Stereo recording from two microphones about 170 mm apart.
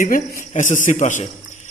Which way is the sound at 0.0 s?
55° left (ahead or behind).